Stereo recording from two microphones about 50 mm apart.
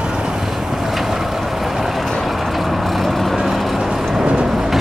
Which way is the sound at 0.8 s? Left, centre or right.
Centre.